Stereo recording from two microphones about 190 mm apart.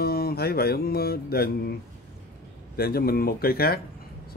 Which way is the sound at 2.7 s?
55° left (ahead or behind).